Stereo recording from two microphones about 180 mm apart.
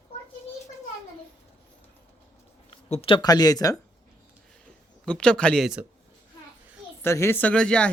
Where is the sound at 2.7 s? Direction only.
35° left (ahead or behind).